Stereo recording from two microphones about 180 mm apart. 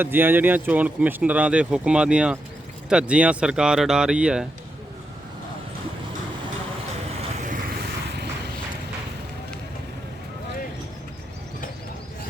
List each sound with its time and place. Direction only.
0.0 s speech: 10° right (ahead or behind)
7.4 s vehicle: 45° right (ahead or behind)